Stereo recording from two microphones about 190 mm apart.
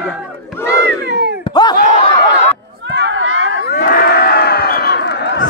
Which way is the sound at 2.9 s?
70° right (ahead or behind).